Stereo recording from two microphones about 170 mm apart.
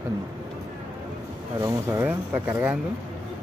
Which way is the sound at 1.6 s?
20° right (ahead or behind).